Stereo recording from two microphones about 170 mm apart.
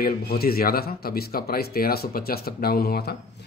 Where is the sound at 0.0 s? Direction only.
65° left (ahead or behind).